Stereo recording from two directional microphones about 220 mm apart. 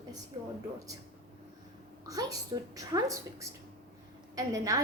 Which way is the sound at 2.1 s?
15° right (ahead or behind).